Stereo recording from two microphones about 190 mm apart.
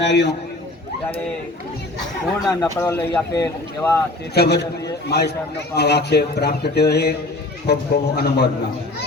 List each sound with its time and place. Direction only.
0.0 s speech: 65° left (ahead or behind)
2.5 s speech: 15° left (ahead or behind)
4.4 s speech: 60° left (ahead or behind)